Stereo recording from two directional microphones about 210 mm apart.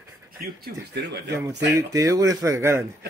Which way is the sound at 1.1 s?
55° right (ahead or behind).